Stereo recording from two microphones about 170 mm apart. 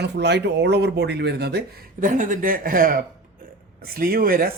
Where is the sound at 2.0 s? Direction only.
50° right (ahead or behind).